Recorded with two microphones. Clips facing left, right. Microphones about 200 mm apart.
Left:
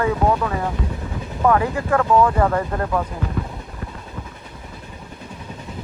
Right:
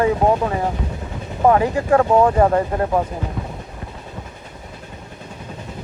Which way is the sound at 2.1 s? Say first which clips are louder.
Left 1 dB; 40° right (ahead or behind).